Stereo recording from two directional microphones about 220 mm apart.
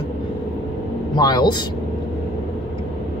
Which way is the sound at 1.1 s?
20° left (ahead or behind).